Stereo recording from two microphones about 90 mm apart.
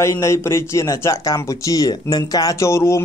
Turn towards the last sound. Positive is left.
turn(degrees=30)  # may be behind; listen again after turning